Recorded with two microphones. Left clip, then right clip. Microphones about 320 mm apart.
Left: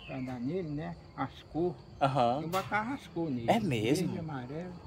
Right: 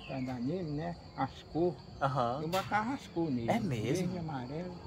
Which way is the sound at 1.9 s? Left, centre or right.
Left.